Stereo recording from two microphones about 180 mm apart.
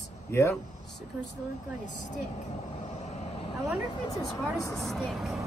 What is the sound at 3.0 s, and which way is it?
Vehicle, 35° left (ahead or behind).